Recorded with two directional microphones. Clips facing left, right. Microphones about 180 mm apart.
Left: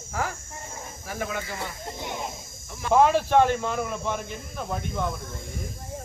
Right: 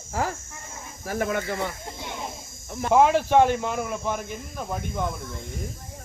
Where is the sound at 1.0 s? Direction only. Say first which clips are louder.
Right 6 dB; 50° right (ahead or behind).